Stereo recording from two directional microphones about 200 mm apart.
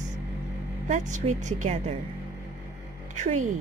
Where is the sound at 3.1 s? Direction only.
35° right (ahead or behind).